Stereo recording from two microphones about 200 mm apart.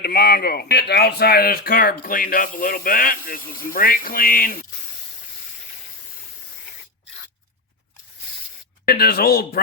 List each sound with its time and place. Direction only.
0.0 s speech: 50° left (ahead or behind)
8.9 s speech: 50° left (ahead or behind)